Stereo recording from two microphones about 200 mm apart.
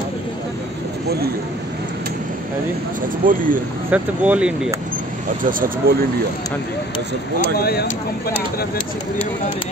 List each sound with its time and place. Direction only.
3.3 s speech: 40° right (ahead or behind)
3.9 s speech: 5° right (ahead or behind)
5.4 s speech: 45° right (ahead or behind)
7.5 s speech: 50° left (ahead or behind)